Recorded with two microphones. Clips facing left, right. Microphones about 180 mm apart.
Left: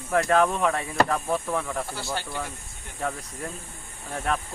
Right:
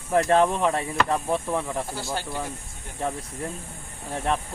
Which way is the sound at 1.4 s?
15° right (ahead or behind).